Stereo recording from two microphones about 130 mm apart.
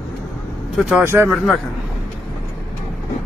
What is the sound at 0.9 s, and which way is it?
Speech, 20° right (ahead or behind).